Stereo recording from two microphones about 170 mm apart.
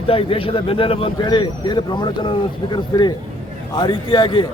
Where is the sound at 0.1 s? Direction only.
30° left (ahead or behind).